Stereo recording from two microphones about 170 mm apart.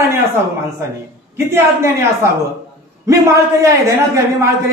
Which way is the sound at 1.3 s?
15° right (ahead or behind).